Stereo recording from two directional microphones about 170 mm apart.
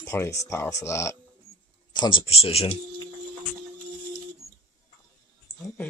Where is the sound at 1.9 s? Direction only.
25° left (ahead or behind).